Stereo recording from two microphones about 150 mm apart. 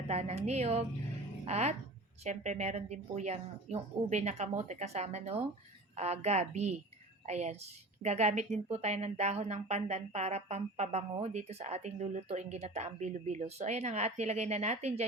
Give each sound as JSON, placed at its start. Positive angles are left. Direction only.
{"t": 0.1, "sound": "speech", "side_deg": -45}